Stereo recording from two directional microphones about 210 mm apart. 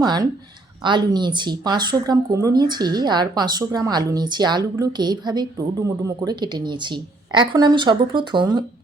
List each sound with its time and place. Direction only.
0.0 s speech: 20° right (ahead or behind)